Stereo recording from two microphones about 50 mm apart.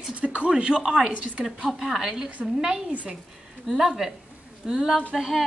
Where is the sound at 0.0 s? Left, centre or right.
Right.